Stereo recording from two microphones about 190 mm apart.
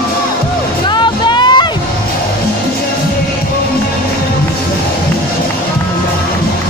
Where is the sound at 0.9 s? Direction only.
25° left (ahead or behind).